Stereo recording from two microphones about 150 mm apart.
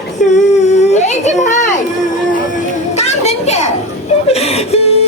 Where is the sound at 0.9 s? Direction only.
50° left (ahead or behind).